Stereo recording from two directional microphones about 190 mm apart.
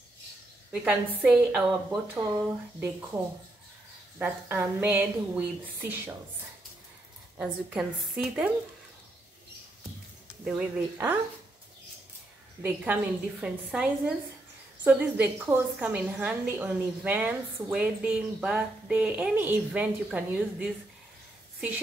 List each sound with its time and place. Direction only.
0.7 s a woman's voice: 5° right (ahead or behind)
2.1 s a woman's voice: 15° right (ahead or behind)
4.2 s a woman's voice: 10° right (ahead or behind)
7.3 s a woman's voice: 5° right (ahead or behind)
10.4 s a woman's voice: 10° right (ahead or behind)
12.6 s a woman's voice: 10° right (ahead or behind)